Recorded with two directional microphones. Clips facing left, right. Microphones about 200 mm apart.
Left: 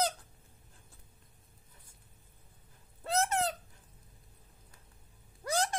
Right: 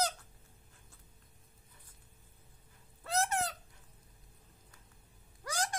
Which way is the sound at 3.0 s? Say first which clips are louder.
Left 3 dB; 25° left (ahead or behind).